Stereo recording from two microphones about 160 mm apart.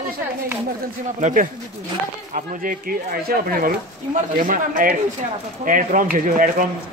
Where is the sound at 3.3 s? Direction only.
65° right (ahead or behind).